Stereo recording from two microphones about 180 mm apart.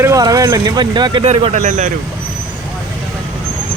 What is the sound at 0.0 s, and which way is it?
Speech, 20° right (ahead or behind).